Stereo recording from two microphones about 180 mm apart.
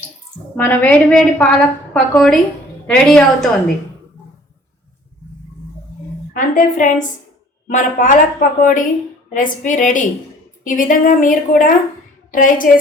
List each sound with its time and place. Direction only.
0.5 s a woman's voice: 10° left (ahead or behind)
6.3 s speech: 45° left (ahead or behind)